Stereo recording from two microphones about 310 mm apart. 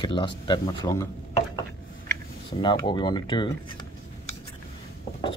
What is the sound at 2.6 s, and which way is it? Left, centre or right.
Speech, centre.